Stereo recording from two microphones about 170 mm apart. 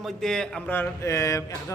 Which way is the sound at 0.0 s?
Centre (ahead or behind).